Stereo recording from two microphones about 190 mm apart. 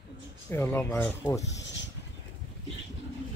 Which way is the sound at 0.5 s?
10° left (ahead or behind).